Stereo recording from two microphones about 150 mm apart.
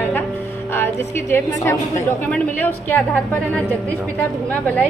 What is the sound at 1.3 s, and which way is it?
A woman's voice, 15° left (ahead or behind).